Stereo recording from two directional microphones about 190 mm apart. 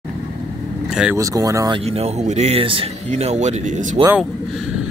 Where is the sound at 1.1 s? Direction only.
15° right (ahead or behind).